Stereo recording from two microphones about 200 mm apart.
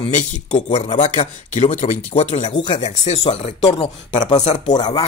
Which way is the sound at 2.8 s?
35° left (ahead or behind).